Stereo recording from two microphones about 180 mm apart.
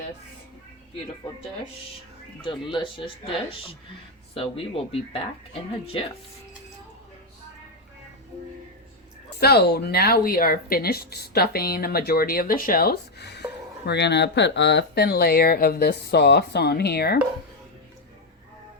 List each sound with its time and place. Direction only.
2.4 s speech: 25° left (ahead or behind)
9.4 s speech: 60° left (ahead or behind)